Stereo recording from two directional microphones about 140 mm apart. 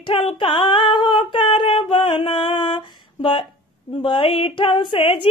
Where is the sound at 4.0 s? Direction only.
40° left (ahead or behind).